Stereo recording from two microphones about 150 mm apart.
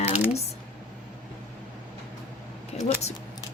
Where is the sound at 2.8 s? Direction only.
45° left (ahead or behind).